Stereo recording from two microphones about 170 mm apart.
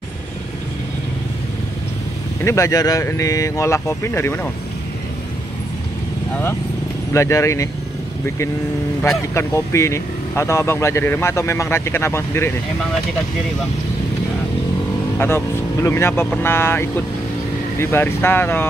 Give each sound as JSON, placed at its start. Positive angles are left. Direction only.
{"t": 2.4, "sound": "speech", "side_deg": 15}
{"t": 7.2, "sound": "speech", "side_deg": 15}
{"t": 9.3, "sound": "speech", "side_deg": 15}
{"t": 15.1, "sound": "speech", "side_deg": 15}